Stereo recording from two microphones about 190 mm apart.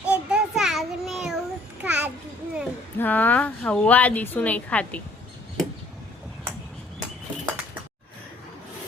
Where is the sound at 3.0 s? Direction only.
10° left (ahead or behind).